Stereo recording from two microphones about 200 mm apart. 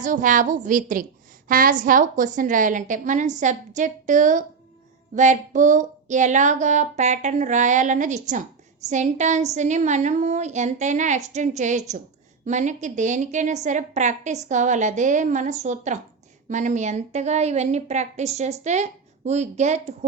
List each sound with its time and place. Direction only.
0.0 s a woman's voice: 40° right (ahead or behind)